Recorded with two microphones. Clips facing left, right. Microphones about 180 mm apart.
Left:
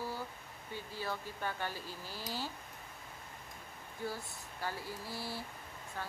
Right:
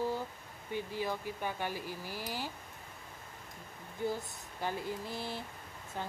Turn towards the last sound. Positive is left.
turn(degrees=-20)  # may be behind; listen again after turning